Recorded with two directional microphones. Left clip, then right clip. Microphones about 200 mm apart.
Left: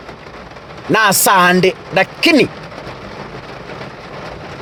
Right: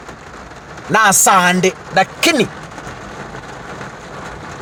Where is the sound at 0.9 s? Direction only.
40° left (ahead or behind).